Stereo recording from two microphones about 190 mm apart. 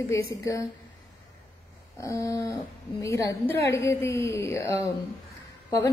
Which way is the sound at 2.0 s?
15° left (ahead or behind).